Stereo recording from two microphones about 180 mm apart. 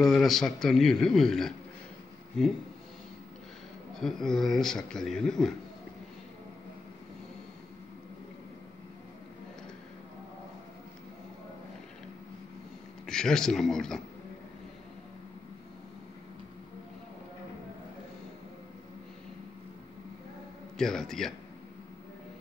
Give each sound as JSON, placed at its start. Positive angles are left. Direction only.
{"t": 0.0, "sound": "a man's voice", "side_deg": 5}
{"t": 4.0, "sound": "a man's voice", "side_deg": 0}
{"t": 13.0, "sound": "a man's voice", "side_deg": 5}
{"t": 20.7, "sound": "a man's voice", "side_deg": 5}